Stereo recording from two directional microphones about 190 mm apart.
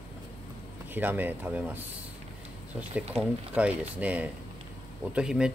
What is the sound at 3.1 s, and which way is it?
Speech, 10° right (ahead or behind).